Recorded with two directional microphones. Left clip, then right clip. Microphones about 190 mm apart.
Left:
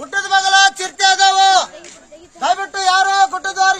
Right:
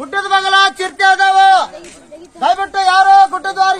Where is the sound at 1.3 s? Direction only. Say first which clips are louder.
Right 3 dB; 20° left (ahead or behind).